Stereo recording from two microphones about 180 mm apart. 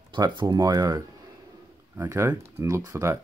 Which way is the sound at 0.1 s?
25° right (ahead or behind).